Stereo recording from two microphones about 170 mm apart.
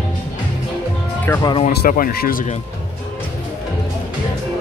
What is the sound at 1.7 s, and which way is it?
Speech, 60° left (ahead or behind).